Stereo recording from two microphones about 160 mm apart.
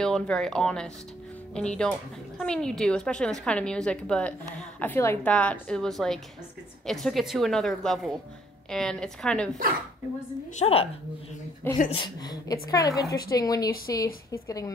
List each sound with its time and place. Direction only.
0.0 s a woman's voice: 5° left (ahead or behind)
10.6 s a woman's voice: 35° left (ahead or behind)
11.9 s a woman's voice: 30° left (ahead or behind)